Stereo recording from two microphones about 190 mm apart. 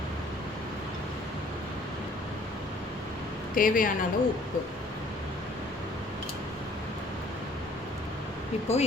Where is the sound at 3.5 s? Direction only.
45° left (ahead or behind).